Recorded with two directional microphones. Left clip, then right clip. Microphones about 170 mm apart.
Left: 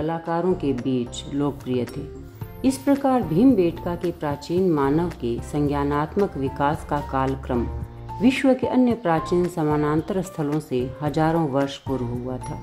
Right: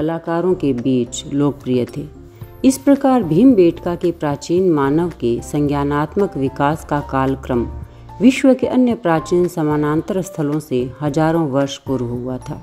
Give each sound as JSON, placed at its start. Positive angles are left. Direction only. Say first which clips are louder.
{"t": 0.0, "sound": "a woman's voice", "louder": "right 5 dB", "side_deg": -20}